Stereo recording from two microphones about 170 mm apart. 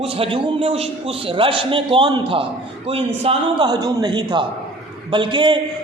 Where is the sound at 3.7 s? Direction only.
25° right (ahead or behind).